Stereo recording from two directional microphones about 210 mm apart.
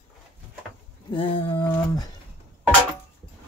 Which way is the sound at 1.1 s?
25° left (ahead or behind).